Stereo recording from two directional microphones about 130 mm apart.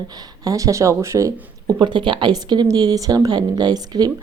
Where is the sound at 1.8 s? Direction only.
40° right (ahead or behind).